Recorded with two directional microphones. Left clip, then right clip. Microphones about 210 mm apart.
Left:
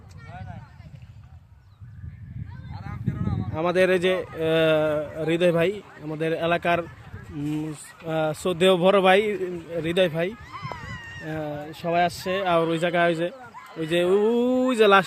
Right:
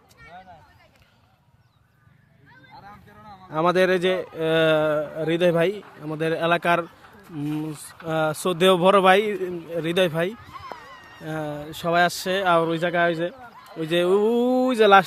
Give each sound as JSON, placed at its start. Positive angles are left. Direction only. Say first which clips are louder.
{"t": 2.7, "sound": "a sound", "louder": "left 7 dB", "side_deg": 20}
{"t": 3.5, "sound": "speech", "louder": "right 5 dB", "side_deg": -15}
{"t": 3.8, "sound": "a man's voice", "louder": "left 4 dB", "side_deg": 0}
{"t": 12.5, "sound": "speech", "louder": "right 1 dB", "side_deg": 0}